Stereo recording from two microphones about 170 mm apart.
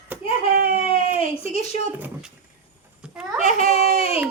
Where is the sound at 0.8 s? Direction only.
35° left (ahead or behind).